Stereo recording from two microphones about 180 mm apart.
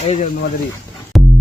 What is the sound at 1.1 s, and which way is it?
Music, centre (ahead or behind).